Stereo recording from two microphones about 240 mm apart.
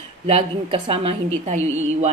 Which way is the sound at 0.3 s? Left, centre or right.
Right.